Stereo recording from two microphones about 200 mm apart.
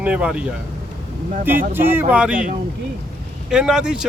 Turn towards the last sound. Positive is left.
turn(degrees=-5)  # may be behind; listen again after turning